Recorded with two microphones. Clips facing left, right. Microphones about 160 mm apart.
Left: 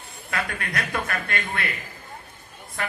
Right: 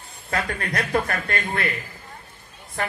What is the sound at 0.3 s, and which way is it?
Speech, 40° right (ahead or behind).